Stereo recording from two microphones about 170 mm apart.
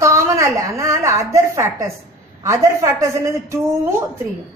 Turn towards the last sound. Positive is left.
turn(degrees=-15)  # may be behind; listen again after turning